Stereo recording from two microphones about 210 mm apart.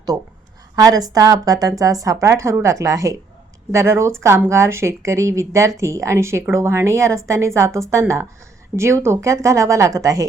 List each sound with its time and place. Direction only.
0.8 s speech: 15° right (ahead or behind)